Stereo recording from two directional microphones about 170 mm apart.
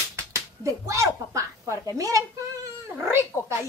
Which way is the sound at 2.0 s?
20° right (ahead or behind).